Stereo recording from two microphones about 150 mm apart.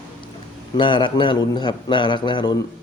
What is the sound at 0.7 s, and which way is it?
Speech, 35° left (ahead or behind).